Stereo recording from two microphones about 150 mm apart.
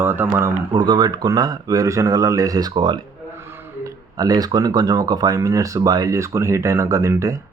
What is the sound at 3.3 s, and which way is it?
Speech, 15° right (ahead or behind).